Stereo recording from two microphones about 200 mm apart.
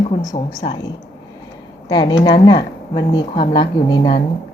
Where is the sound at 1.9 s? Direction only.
20° left (ahead or behind).